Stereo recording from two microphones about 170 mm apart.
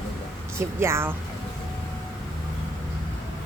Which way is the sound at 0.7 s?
15° right (ahead or behind).